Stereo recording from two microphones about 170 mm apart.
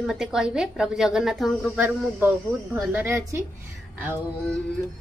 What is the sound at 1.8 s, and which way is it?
Speech, 10° right (ahead or behind).